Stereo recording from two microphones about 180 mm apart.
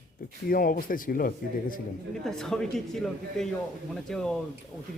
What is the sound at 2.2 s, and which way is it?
Speech, 5° left (ahead or behind).